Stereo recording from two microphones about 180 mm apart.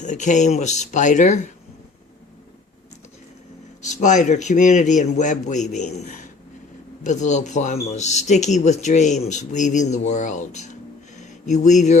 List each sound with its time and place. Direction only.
0.0 s a man's voice: 45° left (ahead or behind)
3.8 s a man's voice: 40° left (ahead or behind)